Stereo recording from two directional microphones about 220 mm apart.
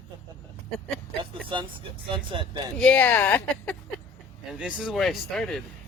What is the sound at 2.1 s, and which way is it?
Speech, 20° right (ahead or behind).